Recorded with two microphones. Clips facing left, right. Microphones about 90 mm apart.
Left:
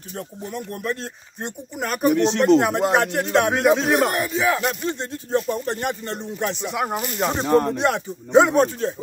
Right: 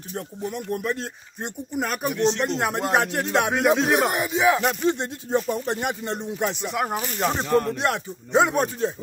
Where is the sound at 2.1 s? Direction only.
65° left (ahead or behind).